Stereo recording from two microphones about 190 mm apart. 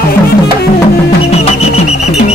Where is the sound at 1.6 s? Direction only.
35° left (ahead or behind).